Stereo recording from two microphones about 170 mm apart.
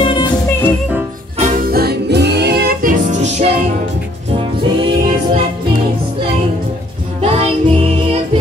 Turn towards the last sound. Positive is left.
turn(degrees=-35)  # may be behind; listen again after turning